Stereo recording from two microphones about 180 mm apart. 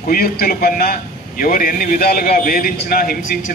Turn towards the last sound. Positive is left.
turn(degrees=50)  # may be behind; listen again after turning